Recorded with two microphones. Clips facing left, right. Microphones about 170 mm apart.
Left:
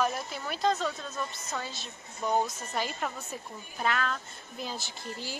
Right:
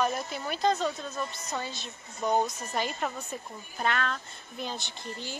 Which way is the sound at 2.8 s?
5° left (ahead or behind).